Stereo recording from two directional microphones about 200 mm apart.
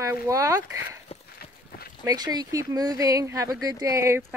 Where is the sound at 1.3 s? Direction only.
50° left (ahead or behind).